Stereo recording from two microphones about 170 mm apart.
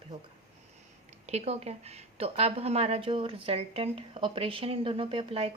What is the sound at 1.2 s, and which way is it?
Speech, 40° right (ahead or behind).